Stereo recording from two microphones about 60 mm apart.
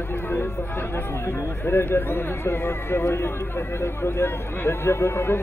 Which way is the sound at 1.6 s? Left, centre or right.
Left.